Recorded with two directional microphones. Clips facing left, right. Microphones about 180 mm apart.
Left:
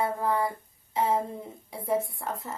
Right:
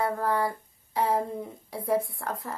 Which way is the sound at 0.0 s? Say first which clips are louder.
Even; 25° left (ahead or behind).